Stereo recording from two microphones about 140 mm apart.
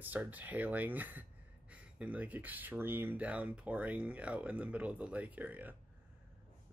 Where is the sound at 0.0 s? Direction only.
10° right (ahead or behind).